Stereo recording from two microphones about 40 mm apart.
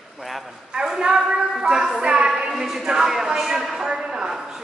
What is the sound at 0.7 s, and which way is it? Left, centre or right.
A woman's voice, centre.